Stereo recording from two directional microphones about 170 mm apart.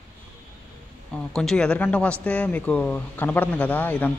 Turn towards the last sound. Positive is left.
turn(degrees=10)  # may be behind; listen again after turning